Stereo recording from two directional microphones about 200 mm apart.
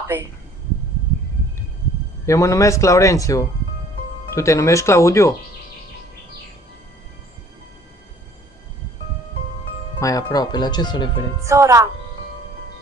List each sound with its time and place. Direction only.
2.2 s a man's voice: 15° left (ahead or behind)
9.9 s speech: 15° left (ahead or behind)
11.4 s speech: 15° right (ahead or behind)